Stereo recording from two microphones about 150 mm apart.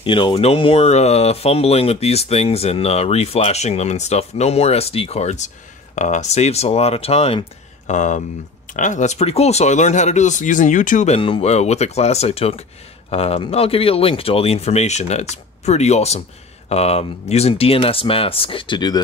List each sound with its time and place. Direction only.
0.0 s speech: 35° left (ahead or behind); by 11.1 s 55° left (ahead or behind)
11.1 s speech: 35° left (ahead or behind)